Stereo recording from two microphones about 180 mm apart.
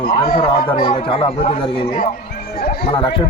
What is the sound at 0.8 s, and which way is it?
Speech, 30° left (ahead or behind).